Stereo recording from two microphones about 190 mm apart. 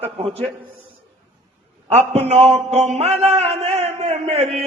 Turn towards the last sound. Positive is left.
turn(degrees=-35)  # may be behind; listen again after turning